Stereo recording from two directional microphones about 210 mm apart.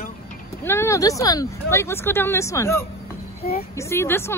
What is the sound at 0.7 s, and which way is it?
Speech, 10° left (ahead or behind).